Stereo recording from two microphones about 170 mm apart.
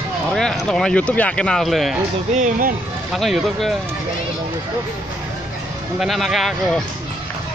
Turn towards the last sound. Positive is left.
turn(degrees=0)  # may be behind; listen again after turning